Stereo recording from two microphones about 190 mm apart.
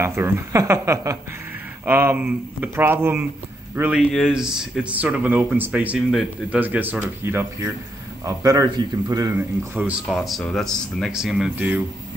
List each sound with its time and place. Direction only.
0.0 s speech: 15° right (ahead or behind)
10.0 s speech: centre (ahead or behind)